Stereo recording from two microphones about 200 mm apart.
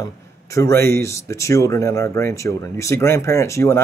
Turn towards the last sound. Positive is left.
turn(degrees=15)  # may be behind; listen again after turning